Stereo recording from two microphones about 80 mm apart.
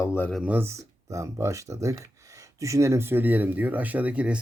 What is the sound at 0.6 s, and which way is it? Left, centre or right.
Speech, right.